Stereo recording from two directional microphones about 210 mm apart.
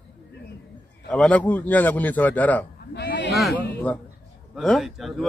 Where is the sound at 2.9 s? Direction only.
55° left (ahead or behind).